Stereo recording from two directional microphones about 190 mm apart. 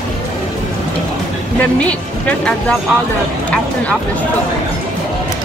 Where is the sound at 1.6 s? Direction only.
5° left (ahead or behind).